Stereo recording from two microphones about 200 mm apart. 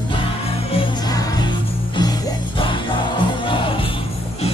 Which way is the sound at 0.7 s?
25° left (ahead or behind).